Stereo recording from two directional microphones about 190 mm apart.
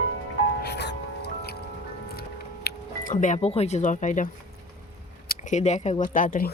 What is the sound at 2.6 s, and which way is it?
Speech, 45° left (ahead or behind).